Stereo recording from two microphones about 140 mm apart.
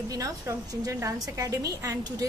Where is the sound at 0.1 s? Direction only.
25° right (ahead or behind).